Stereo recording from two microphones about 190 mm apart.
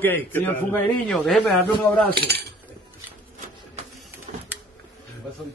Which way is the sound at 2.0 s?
60° right (ahead or behind).